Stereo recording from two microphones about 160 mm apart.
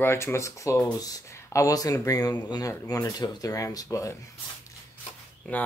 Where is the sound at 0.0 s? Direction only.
15° left (ahead or behind).